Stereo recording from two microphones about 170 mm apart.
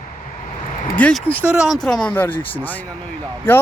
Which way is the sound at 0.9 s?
5° left (ahead or behind).